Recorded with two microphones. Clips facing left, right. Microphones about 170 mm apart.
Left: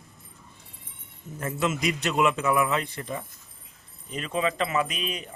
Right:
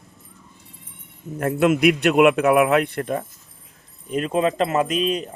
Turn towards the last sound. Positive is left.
turn(degrees=-45)  # may be behind; listen again after turning